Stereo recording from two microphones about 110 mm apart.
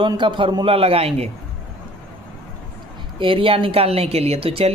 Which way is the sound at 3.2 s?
55° right (ahead or behind).